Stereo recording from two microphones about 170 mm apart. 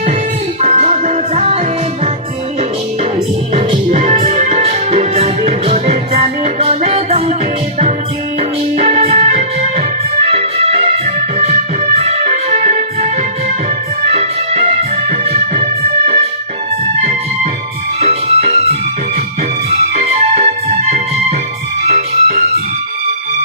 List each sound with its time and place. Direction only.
0.6 s music: 40° right (ahead or behind)
3.7 s music: 35° right (ahead or behind)
8.4 s music: 40° right (ahead or behind)
11.9 s music: 40° right (ahead or behind)
14.1 s music: 40° right (ahead or behind)
16.8 s music: 40° right (ahead or behind)
19.9 s music: 40° right (ahead or behind)